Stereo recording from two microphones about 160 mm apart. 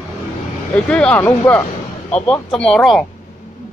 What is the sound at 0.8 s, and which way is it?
Speech, 5° left (ahead or behind).